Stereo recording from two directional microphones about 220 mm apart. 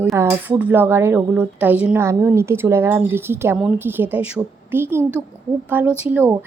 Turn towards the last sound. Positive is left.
turn(degrees=-10)  # may be behind; listen again after turning